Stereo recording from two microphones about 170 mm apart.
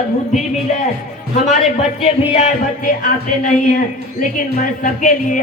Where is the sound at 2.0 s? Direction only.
40° left (ahead or behind).